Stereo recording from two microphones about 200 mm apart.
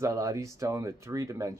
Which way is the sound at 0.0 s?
15° right (ahead or behind).